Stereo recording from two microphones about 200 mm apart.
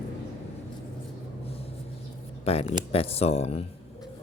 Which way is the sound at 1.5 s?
30° left (ahead or behind).